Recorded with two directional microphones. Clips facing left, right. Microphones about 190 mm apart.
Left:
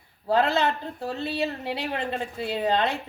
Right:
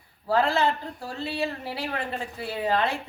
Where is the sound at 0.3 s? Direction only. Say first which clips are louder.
Left 1 dB; 20° left (ahead or behind).